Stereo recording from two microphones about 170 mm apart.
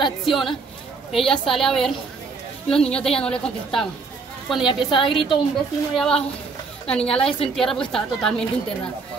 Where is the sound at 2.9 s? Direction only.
5° left (ahead or behind).